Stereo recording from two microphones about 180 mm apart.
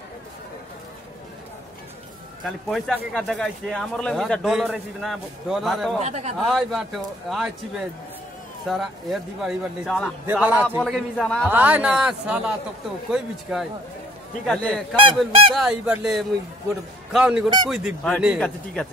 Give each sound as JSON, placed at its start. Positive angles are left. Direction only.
{"t": 2.4, "sound": "speech", "side_deg": 0}
{"t": 5.9, "sound": "speech", "side_deg": -40}
{"t": 6.3, "sound": "a man's voice", "side_deg": 0}
{"t": 11.4, "sound": "speech", "side_deg": -10}